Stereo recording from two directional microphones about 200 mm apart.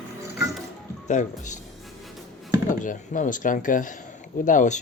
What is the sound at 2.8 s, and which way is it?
Speech, 40° left (ahead or behind).